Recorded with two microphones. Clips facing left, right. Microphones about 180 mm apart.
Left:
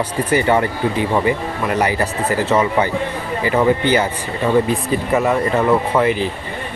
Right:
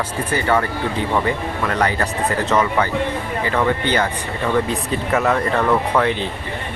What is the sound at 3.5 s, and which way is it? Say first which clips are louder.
A man's voice: left 4 dB; 10° left (ahead or behind).